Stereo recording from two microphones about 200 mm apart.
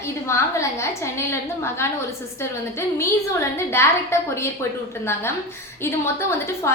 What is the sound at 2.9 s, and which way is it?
A woman's voice, 15° left (ahead or behind).